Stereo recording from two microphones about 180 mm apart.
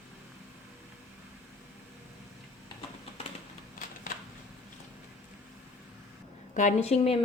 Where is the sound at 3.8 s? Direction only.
50° left (ahead or behind).